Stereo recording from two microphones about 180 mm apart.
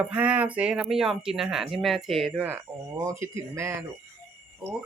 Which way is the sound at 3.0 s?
15° right (ahead or behind).